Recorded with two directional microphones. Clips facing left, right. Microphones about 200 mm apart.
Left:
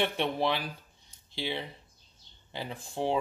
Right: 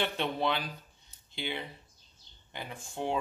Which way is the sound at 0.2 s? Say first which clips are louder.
Left 2 dB; 25° left (ahead or behind).